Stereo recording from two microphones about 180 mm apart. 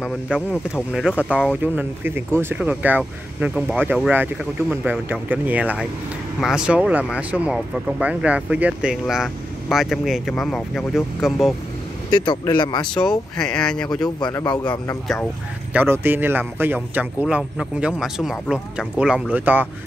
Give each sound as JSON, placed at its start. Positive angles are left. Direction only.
{"t": 0.0, "sound": "speech", "side_deg": 10}
{"t": 0.9, "sound": "speech", "side_deg": -5}
{"t": 12.1, "sound": "speech", "side_deg": 25}
{"t": 12.8, "sound": "speech", "side_deg": 5}
{"t": 14.0, "sound": "speech", "side_deg": 20}
{"t": 15.7, "sound": "speech", "side_deg": -10}